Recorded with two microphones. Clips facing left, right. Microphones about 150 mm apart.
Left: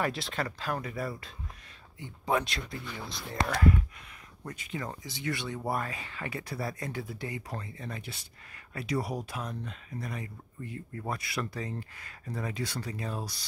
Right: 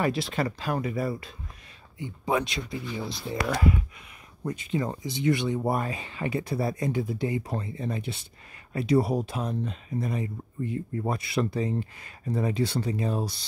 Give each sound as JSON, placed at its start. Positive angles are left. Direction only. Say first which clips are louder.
{"t": 0.0, "sound": "speech", "louder": "right 5 dB", "side_deg": -5}
{"t": 4.4, "sound": "speech", "louder": "right 9 dB", "side_deg": -20}